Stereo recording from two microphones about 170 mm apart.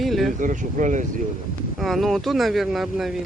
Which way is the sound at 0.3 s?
50° right (ahead or behind).